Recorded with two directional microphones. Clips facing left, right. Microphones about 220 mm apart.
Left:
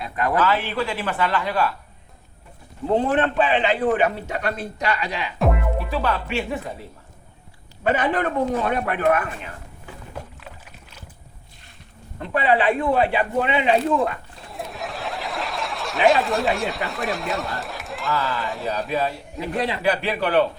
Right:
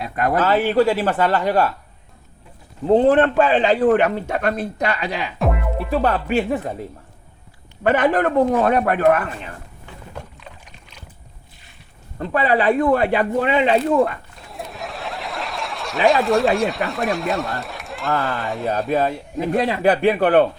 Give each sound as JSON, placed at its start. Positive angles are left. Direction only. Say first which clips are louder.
{"t": 0.0, "sound": "a man's voice", "louder": "right 2 dB", "side_deg": -45}
{"t": 2.8, "sound": "a man's voice", "louder": "right 6 dB", "side_deg": -40}
{"t": 5.4, "sound": "music", "louder": "left 1 dB", "side_deg": 0}
{"t": 5.9, "sound": "a man's voice", "louder": "right 8 dB", "side_deg": -45}
{"t": 7.9, "sound": "a man's voice", "louder": "right 7 dB", "side_deg": -45}
{"t": 10.4, "sound": "boat", "louder": "even", "side_deg": 5}
{"t": 12.3, "sound": "a man's voice", "louder": "right 2 dB", "side_deg": -40}
{"t": 14.3, "sound": "snicker", "louder": "even", "side_deg": 0}
{"t": 18.1, "sound": "a man's voice", "louder": "right 3 dB", "side_deg": -50}
{"t": 18.4, "sound": "speech", "louder": "right 3 dB", "side_deg": 0}
{"t": 18.9, "sound": "a man's voice", "louder": "right 5 dB", "side_deg": -50}